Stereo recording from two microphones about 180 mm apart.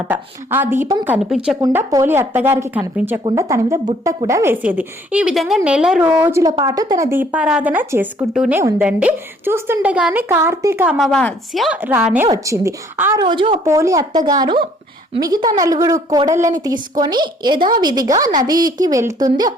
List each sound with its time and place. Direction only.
0.1 s a woman's voice: 10° right (ahead or behind)
1.6 s a woman's voice: 20° right (ahead or behind)
6.4 s a woman's voice: 20° right (ahead or behind)
13.2 s a woman's voice: 30° right (ahead or behind)
13.7 s a woman's voice: 15° right (ahead or behind)